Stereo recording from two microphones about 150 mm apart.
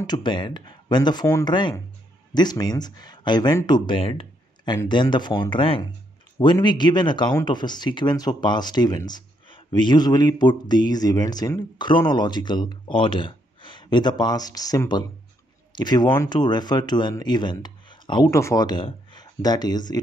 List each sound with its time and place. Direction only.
0.0 s speech: 30° left (ahead or behind)